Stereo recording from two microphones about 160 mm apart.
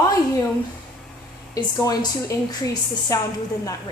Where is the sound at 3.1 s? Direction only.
20° left (ahead or behind).